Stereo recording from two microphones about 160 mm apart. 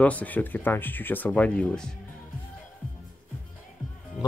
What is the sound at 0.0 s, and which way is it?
Speech, 10° left (ahead or behind).